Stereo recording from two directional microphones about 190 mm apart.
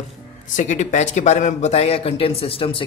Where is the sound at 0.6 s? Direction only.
40° left (ahead or behind).